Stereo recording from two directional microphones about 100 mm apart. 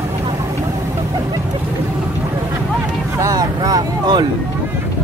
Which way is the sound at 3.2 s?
40° right (ahead or behind).